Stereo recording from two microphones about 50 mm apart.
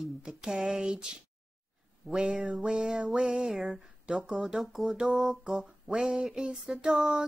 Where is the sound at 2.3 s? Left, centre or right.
Centre.